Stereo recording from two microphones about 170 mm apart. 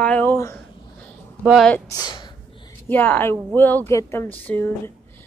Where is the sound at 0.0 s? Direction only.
10° left (ahead or behind).